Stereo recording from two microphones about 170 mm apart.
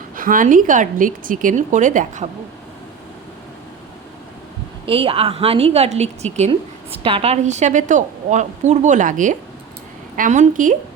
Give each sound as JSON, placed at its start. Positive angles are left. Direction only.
{"t": 0.2, "sound": "a woman's voice", "side_deg": -55}
{"t": 4.9, "sound": "a woman's voice", "side_deg": -35}